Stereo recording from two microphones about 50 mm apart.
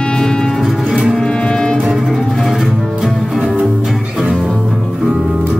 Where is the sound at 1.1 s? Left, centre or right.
Centre.